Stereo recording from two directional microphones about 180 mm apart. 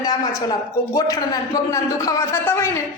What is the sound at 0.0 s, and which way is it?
A man's voice, 20° left (ahead or behind).